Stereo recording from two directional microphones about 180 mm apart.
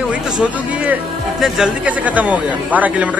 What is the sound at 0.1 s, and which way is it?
A man's voice, 10° right (ahead or behind).